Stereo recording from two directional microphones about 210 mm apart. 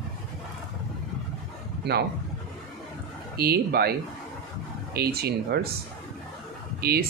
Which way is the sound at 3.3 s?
50° right (ahead or behind).